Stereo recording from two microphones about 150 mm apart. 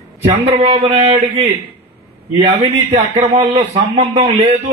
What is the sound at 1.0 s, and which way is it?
Speech, 30° right (ahead or behind).